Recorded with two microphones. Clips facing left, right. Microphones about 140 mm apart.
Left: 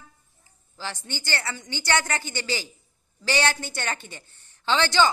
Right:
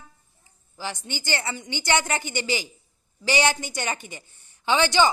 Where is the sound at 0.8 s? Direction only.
15° right (ahead or behind).